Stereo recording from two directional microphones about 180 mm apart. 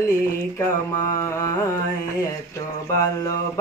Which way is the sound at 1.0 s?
15° left (ahead or behind).